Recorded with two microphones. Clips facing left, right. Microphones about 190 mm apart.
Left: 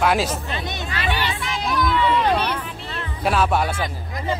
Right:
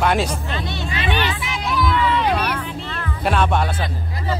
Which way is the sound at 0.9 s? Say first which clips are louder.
Right 2 dB; 20° right (ahead or behind).